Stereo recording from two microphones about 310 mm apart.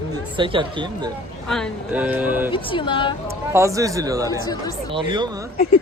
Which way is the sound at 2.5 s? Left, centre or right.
Centre.